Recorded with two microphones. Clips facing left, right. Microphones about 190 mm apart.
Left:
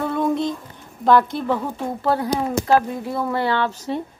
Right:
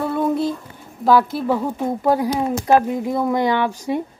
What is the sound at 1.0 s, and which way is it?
Speech, 5° right (ahead or behind).